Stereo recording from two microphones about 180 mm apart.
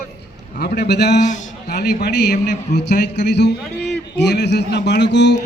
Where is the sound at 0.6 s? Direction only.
60° left (ahead or behind).